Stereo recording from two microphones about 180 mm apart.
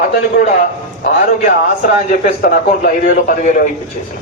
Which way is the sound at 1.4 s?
50° left (ahead or behind).